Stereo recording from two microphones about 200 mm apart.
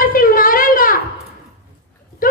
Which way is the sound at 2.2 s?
45° left (ahead or behind).